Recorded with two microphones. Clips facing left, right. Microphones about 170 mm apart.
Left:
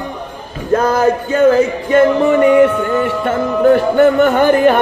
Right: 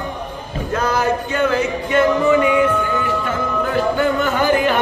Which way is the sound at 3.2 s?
60° left (ahead or behind).